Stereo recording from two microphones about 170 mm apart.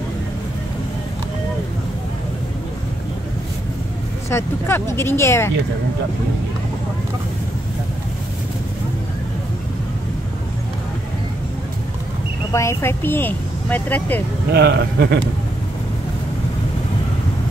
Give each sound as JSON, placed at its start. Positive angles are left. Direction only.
{"t": 4.3, "sound": "speech", "side_deg": 15}
{"t": 12.5, "sound": "speech", "side_deg": 15}
{"t": 14.5, "sound": "a man's voice", "side_deg": -75}